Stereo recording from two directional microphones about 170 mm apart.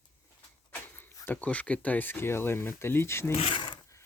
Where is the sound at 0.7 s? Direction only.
10° left (ahead or behind).